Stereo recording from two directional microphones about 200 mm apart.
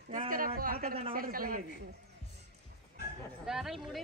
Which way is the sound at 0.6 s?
45° right (ahead or behind).